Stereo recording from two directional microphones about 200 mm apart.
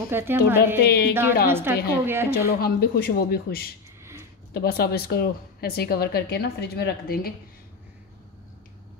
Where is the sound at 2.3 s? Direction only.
50° left (ahead or behind).